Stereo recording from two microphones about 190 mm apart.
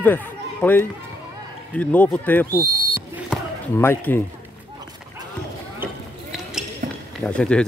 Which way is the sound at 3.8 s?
10° left (ahead or behind).